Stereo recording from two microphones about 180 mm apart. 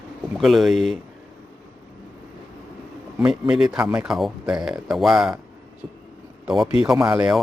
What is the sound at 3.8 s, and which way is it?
Speech, 15° right (ahead or behind).